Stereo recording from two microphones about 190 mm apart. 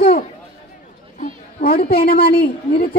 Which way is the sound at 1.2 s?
50° left (ahead or behind).